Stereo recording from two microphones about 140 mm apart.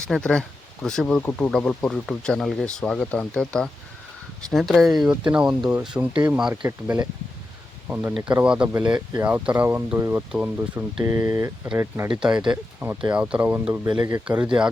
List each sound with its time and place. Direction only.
0.1 s speech: 5° left (ahead or behind); by 11.7 s 20° right (ahead or behind)
12.0 s speech: 5° right (ahead or behind)
13.8 s speech: 30° right (ahead or behind)
14.1 s speech: 10° right (ahead or behind)